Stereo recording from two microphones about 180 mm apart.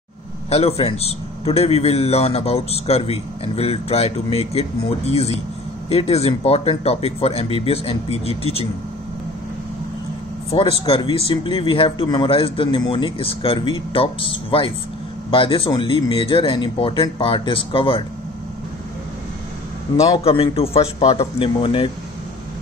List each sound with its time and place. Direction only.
0.5 s a man's voice: 35° left (ahead or behind)
10.5 s speech: 25° left (ahead or behind)
15.3 s speech: 30° left (ahead or behind)
20.2 s a man's voice: 30° left (ahead or behind)